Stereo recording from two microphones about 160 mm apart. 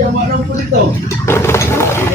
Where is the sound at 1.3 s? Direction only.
15° left (ahead or behind).